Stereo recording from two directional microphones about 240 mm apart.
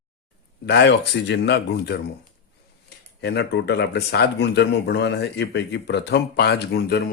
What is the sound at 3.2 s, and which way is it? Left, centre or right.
Speech, left.